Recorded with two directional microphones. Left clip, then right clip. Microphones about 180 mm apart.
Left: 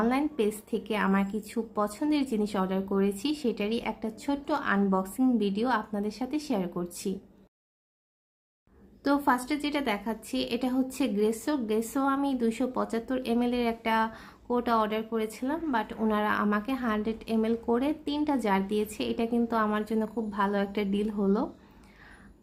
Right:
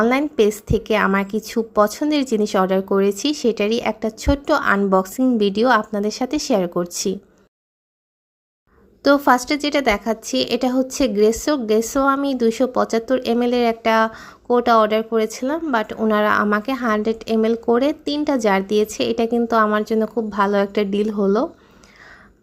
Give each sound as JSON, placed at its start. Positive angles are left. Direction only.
{"t": 0.0, "sound": "a woman's voice", "side_deg": -40}
{"t": 9.0, "sound": "a woman's voice", "side_deg": -35}